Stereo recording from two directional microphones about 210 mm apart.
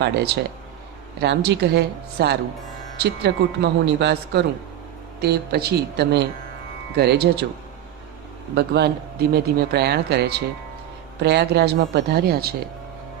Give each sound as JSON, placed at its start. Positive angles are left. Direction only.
{"t": 0.0, "sound": "speech", "side_deg": -50}
{"t": 8.5, "sound": "speech", "side_deg": -50}